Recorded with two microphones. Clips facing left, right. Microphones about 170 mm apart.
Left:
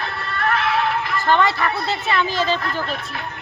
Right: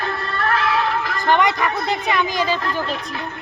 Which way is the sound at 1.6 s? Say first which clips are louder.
Right 1 dB; 15° right (ahead or behind).